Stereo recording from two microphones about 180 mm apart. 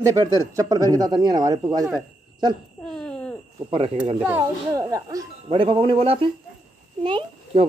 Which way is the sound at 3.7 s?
30° right (ahead or behind).